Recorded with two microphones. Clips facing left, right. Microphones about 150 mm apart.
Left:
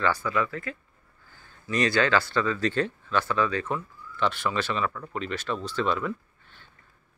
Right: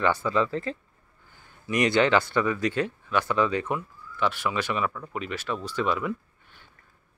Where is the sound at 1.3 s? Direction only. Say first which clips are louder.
Right 1 dB; 15° right (ahead or behind).